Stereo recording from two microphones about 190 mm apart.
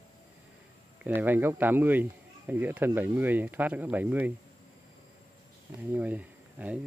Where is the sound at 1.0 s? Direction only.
10° right (ahead or behind).